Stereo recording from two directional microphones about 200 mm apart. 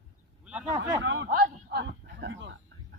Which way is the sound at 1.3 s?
45° right (ahead or behind).